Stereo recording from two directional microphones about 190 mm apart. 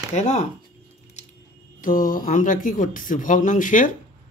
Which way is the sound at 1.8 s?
45° left (ahead or behind).